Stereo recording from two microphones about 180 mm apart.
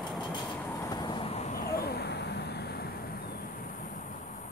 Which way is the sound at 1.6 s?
60° left (ahead or behind).